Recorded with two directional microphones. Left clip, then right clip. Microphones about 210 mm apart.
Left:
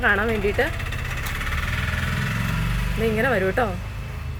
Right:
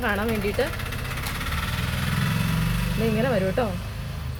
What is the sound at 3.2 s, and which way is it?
Speech, 15° left (ahead or behind).